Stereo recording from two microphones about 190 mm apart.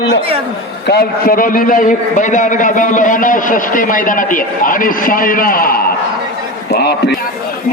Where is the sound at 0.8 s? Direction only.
55° left (ahead or behind).